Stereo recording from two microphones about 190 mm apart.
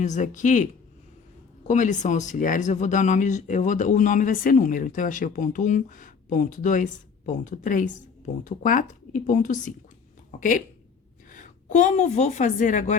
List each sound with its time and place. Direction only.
0.0 s speech: 40° left (ahead or behind)
11.3 s a woman's voice: 40° left (ahead or behind)